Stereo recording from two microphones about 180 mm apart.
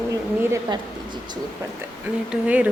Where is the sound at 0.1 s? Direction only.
15° right (ahead or behind).